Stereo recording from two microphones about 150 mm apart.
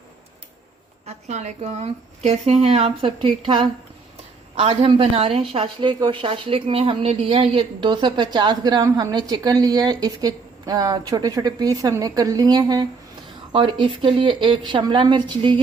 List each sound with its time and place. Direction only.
1.0 s a woman's voice: 50° right (ahead or behind); by 15.6 s 30° right (ahead or behind)